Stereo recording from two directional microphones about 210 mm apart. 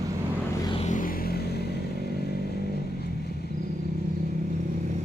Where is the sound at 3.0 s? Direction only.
50° left (ahead or behind).